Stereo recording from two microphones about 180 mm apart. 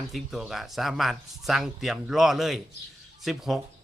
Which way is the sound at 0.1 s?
Centre (ahead or behind).